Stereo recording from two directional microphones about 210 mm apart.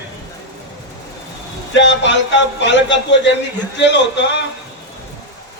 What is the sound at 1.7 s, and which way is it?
Speech, 55° left (ahead or behind).